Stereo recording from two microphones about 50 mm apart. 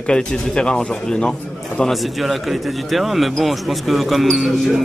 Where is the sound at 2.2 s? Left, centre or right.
Centre.